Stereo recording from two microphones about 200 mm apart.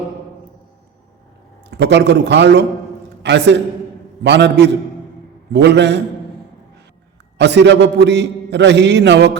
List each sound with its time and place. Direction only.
1.8 s a man's voice: 60° right (ahead or behind)
7.3 s a man's voice: 60° right (ahead or behind)